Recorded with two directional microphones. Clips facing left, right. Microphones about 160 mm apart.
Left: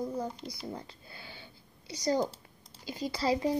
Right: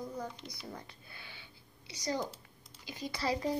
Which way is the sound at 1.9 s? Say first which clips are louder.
Left 7 dB; 40° left (ahead or behind).